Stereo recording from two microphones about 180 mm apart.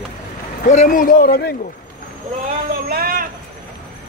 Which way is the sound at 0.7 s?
45° left (ahead or behind).